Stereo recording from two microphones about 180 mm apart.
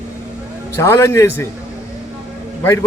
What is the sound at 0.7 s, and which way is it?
Speech, 15° left (ahead or behind).